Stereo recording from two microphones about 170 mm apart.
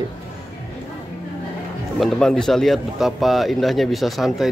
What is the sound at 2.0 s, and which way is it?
Speech, 5° left (ahead or behind).